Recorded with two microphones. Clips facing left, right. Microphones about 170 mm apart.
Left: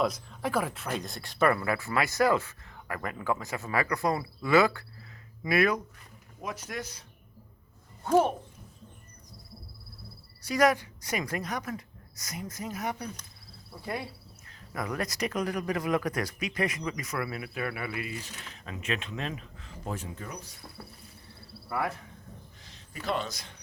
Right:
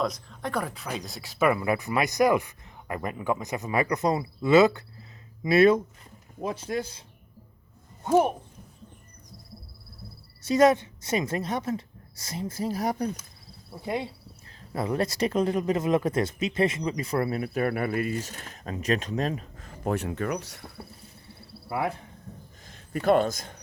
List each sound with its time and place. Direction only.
0.0 s speech: 5° left (ahead or behind); by 7.0 s 30° right (ahead or behind)
8.0 s speech: 15° right (ahead or behind)
10.4 s speech: 25° right (ahead or behind)
13.8 s speech: 20° right (ahead or behind); by 20.6 s 75° right (ahead or behind)
20.8 s a sound: 15° right (ahead or behind)
21.7 s speech: 20° right (ahead or behind)
22.6 s a man's voice: 55° right (ahead or behind)